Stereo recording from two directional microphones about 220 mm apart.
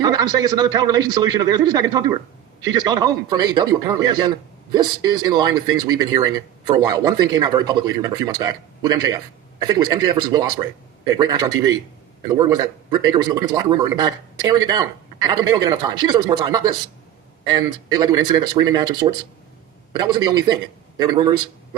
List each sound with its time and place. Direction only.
0.0 s a man's voice: 15° right (ahead or behind)